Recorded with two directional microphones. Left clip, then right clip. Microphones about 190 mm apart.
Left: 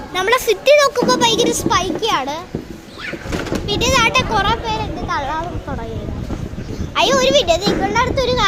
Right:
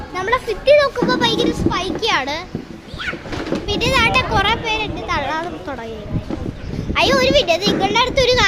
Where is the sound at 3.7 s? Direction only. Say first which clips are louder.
Left 1 dB; 10° left (ahead or behind).